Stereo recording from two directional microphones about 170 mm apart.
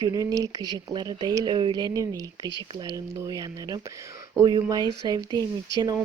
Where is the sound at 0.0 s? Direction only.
20° right (ahead or behind).